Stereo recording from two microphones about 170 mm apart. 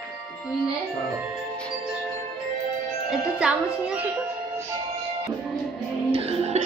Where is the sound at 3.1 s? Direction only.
5° right (ahead or behind).